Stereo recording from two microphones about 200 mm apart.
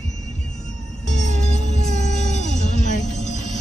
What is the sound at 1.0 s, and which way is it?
Music, 35° left (ahead or behind).